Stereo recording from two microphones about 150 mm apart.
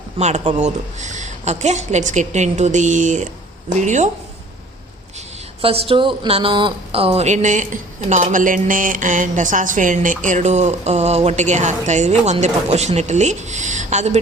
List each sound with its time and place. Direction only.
0.2 s a woman's voice: 50° right (ahead or behind)
5.6 s a woman's voice: 40° right (ahead or behind)